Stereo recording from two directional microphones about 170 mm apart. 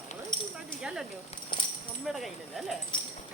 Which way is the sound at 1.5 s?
30° left (ahead or behind).